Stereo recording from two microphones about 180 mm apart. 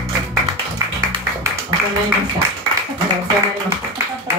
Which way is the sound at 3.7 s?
15° right (ahead or behind).